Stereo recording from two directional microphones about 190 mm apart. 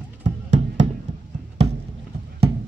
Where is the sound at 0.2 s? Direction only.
40° right (ahead or behind).